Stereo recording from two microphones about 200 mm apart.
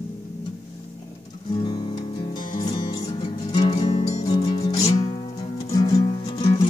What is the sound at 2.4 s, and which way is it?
Music, 20° left (ahead or behind).